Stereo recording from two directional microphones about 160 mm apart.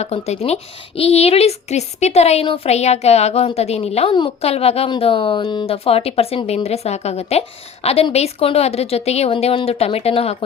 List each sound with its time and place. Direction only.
0.0 s a woman's voice: 40° left (ahead or behind)